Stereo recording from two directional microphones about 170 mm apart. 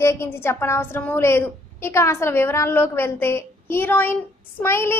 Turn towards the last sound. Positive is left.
turn(degrees=15)  # may be behind; listen again after turning